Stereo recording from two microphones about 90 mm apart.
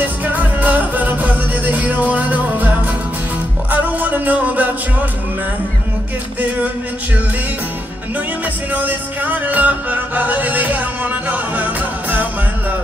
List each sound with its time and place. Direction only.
0.0 s music: 20° right (ahead or behind)
3.7 s music: 20° right (ahead or behind)
8.8 s music: 20° right (ahead or behind)